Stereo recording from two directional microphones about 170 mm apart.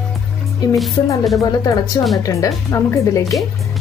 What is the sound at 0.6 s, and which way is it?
Speech, 25° left (ahead or behind).